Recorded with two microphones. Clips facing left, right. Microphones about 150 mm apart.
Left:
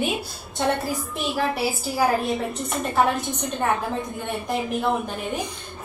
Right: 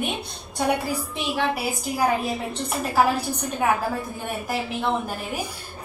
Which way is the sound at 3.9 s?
20° left (ahead or behind).